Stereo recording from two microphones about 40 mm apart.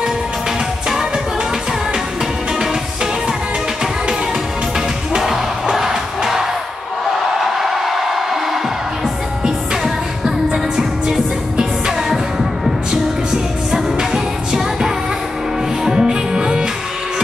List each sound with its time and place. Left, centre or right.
0.8 s music: centre
4.7 s music: centre
7.5 s a sound: centre
10.5 s music: centre